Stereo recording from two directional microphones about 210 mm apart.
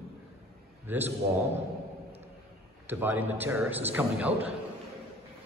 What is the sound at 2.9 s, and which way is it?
A man's voice, 10° right (ahead or behind).